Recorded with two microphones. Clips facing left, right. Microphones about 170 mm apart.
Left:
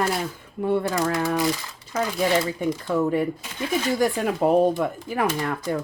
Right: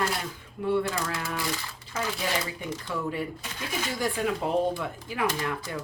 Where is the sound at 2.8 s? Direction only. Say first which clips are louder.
Left 9 dB; 45° left (ahead or behind).